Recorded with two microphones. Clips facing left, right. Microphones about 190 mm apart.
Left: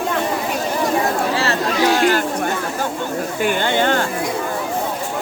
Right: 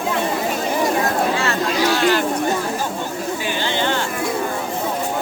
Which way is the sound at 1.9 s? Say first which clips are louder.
Left 1 dB; 45° left (ahead or behind).